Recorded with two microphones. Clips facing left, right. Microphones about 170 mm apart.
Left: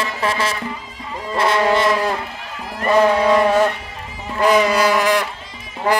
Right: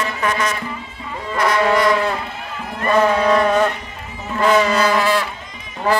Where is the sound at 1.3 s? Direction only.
25° left (ahead or behind).